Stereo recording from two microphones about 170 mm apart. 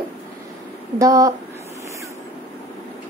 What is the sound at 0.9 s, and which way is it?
Speech, 20° right (ahead or behind).